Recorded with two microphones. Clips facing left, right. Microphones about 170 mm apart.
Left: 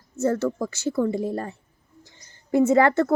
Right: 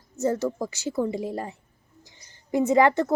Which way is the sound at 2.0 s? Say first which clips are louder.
Left 2 dB; 15° right (ahead or behind).